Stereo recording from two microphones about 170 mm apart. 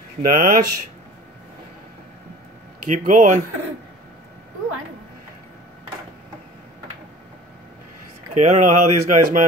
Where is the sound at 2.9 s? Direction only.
50° right (ahead or behind).